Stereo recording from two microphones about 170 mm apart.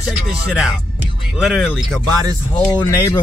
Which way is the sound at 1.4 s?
5° right (ahead or behind).